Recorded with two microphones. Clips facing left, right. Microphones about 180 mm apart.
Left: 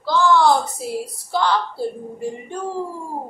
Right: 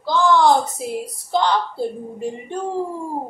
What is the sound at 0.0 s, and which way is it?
A woman's voice, 15° right (ahead or behind).